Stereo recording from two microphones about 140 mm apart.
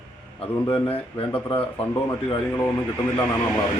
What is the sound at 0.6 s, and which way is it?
Speech, 15° left (ahead or behind).